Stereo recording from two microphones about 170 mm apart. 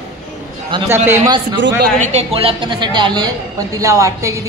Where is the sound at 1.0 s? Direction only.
20° right (ahead or behind).